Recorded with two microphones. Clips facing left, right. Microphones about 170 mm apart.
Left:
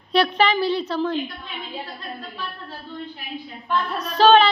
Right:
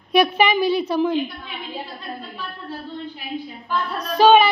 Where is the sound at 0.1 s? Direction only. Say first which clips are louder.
Right 2 dB; 10° right (ahead or behind).